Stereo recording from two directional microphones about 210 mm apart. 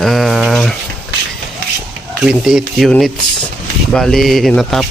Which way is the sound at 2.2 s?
Centre (ahead or behind).